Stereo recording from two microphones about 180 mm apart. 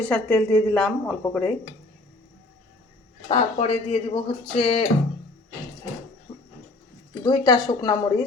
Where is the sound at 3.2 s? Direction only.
30° left (ahead or behind).